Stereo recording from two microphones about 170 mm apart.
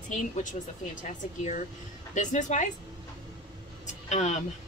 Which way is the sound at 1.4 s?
45° left (ahead or behind).